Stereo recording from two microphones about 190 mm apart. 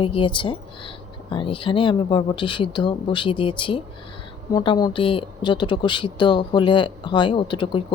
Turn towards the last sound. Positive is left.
turn(degrees=25)  # may be behind; listen again after turning